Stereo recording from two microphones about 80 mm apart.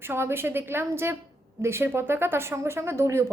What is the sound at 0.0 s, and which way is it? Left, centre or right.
A woman's voice, right.